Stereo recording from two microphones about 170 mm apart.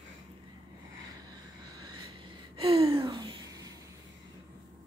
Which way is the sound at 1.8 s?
25° right (ahead or behind).